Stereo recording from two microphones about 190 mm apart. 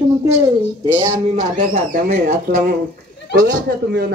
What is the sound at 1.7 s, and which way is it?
Speech, 40° right (ahead or behind).